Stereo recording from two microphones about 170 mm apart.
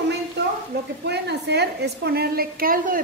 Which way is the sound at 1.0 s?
80° right.